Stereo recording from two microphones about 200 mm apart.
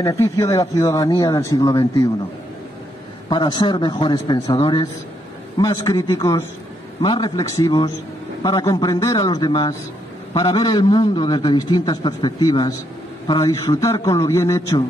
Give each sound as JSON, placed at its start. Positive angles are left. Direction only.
{"t": 0.0, "sound": "speech", "side_deg": 15}
{"t": 3.3, "sound": "a man's voice", "side_deg": 20}